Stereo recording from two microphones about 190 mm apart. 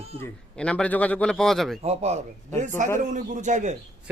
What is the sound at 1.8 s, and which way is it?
A man's voice, 35° right (ahead or behind).